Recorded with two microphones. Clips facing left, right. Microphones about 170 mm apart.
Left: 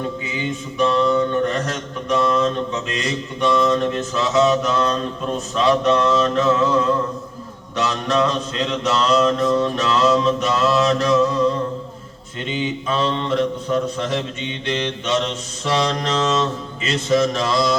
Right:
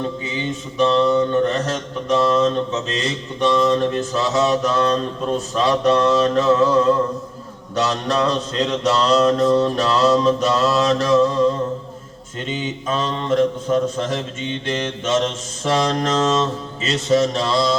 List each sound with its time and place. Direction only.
0.3 s a man's voice: 30° right (ahead or behind)
12.4 s a man's voice: 40° right (ahead or behind)